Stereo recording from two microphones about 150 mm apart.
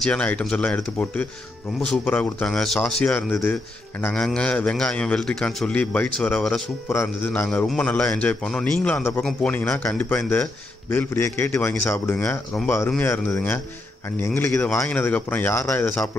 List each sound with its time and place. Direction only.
0.0 s a man's voice: 10° left (ahead or behind)
1.8 s a man's voice: 10° left (ahead or behind)